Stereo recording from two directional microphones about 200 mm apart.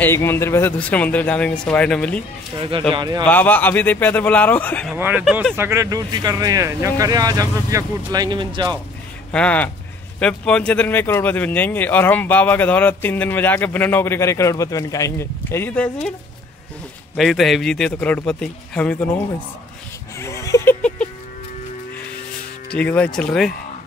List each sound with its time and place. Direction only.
0.0 s speech: 10° left (ahead or behind)
2.9 s speech: 20° right (ahead or behind)
3.3 s speech: 10° left (ahead or behind)
4.9 s speech: 10° right (ahead or behind)
9.3 s a man's voice: 5° left (ahead or behind)
17.2 s a man's voice: centre (ahead or behind)
20.2 s a sound: 15° left (ahead or behind)
22.8 s a man's voice: 5° left (ahead or behind)